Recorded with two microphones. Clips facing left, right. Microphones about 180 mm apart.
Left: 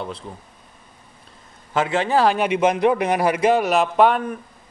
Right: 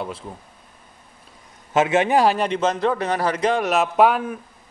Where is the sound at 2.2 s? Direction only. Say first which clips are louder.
Left 2 dB; 5° left (ahead or behind).